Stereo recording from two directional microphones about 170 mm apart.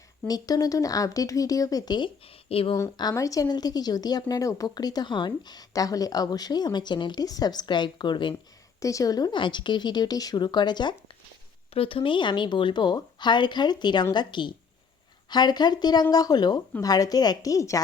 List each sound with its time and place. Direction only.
0.3 s speech: 20° left (ahead or behind)
2.7 s speech: 20° left (ahead or behind)